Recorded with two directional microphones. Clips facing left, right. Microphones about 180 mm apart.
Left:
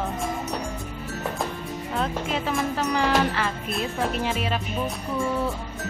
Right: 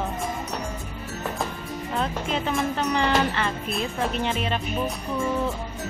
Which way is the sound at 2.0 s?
Centre (ahead or behind).